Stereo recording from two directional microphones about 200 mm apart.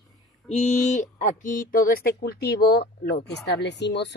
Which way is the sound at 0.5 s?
35° left (ahead or behind).